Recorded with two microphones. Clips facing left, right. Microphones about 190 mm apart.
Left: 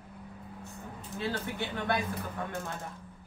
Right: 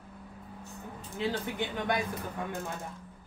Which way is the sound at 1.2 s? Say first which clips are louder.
Right 2 dB; 15° right (ahead or behind).